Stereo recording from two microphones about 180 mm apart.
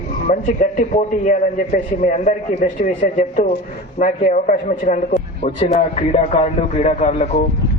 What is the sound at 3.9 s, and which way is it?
A man's voice, 45° left (ahead or behind).